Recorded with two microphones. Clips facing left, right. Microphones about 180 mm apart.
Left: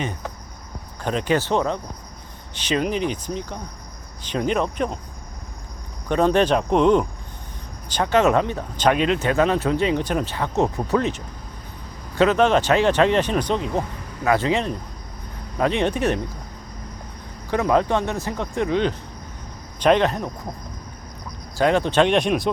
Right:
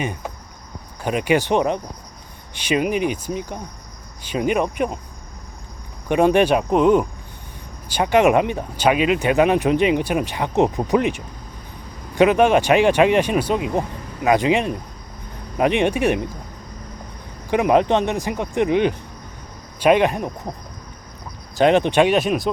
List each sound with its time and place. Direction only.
0.0 s speech: 10° right (ahead or behind)
6.1 s speech: 10° right (ahead or behind)
17.5 s speech: 15° right (ahead or behind)
21.5 s speech: 20° right (ahead or behind); by 22.4 s 5° right (ahead or behind)